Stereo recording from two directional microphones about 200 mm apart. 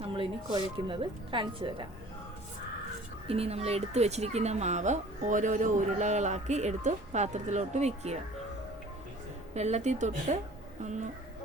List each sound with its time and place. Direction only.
0.2 s speech: 25° right (ahead or behind)
3.2 s speech: 30° right (ahead or behind)
9.6 s speech: 35° right (ahead or behind)